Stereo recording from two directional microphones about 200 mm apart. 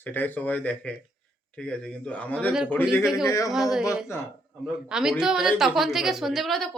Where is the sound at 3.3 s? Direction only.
15° left (ahead or behind).